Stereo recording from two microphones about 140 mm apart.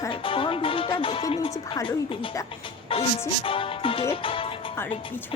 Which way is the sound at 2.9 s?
40° left (ahead or behind).